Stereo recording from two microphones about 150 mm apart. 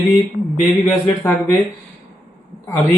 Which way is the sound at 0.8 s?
15° left (ahead or behind).